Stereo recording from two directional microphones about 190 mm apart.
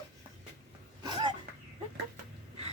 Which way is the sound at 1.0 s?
20° right (ahead or behind).